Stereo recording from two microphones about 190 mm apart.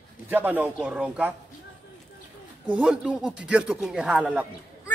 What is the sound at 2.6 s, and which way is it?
Speech, 5° right (ahead or behind).